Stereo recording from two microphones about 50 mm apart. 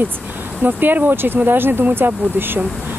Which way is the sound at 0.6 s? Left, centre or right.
Right.